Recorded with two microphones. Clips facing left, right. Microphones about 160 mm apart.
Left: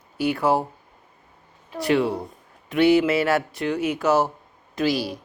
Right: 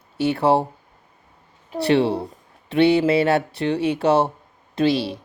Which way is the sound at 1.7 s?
30° right (ahead or behind).